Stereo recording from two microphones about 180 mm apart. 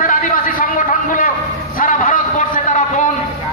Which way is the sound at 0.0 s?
50° left (ahead or behind).